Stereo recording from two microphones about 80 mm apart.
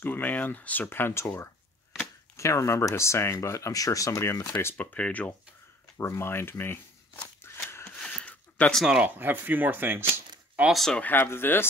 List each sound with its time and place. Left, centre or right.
0.0 s speech: left
4.7 s speech: centre
5.9 s speech: left
7.4 s a sound: left
7.9 s a sound: centre
9.0 s speech: right
10.7 s speech: centre
11.0 s speech: left